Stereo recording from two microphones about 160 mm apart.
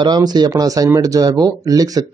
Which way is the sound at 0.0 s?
25° right (ahead or behind).